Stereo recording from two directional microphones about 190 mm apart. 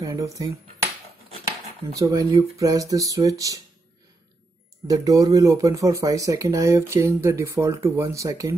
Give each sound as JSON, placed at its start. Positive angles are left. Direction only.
{"t": 0.0, "sound": "speech", "side_deg": -20}
{"t": 2.0, "sound": "speech", "side_deg": -15}
{"t": 4.8, "sound": "speech", "side_deg": -20}